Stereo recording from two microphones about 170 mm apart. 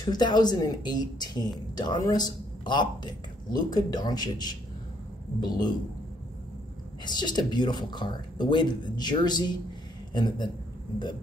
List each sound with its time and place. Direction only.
0.0 s a man's voice: 25° left (ahead or behind)
7.1 s a man's voice: 25° left (ahead or behind)